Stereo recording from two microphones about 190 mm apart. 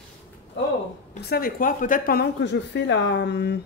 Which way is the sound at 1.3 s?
45° left (ahead or behind).